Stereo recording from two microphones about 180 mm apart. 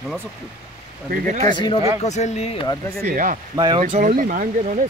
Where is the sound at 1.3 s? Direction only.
45° right (ahead or behind).